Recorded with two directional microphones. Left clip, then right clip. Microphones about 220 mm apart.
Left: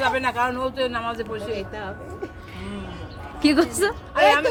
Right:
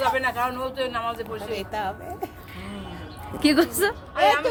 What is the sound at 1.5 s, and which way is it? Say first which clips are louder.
Speech: right 3 dB; 50° right (ahead or behind).